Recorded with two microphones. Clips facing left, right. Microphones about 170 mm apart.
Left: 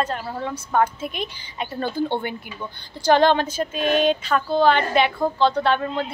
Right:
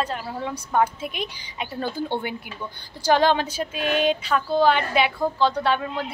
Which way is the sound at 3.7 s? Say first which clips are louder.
Left 3 dB; 45° left (ahead or behind).